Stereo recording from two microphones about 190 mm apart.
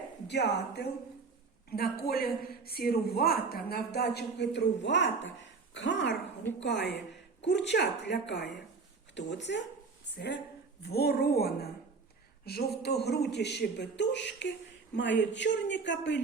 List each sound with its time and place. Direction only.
0.3 s a man's voice: 60° left (ahead or behind)
10.8 s a man's voice: 55° left (ahead or behind)